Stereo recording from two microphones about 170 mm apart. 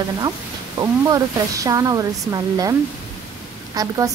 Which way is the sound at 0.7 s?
20° right (ahead or behind).